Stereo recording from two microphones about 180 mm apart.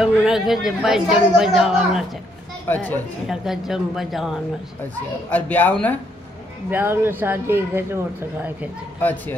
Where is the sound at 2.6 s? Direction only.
10° left (ahead or behind).